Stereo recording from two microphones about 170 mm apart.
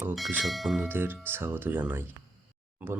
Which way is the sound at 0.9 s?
10° right (ahead or behind).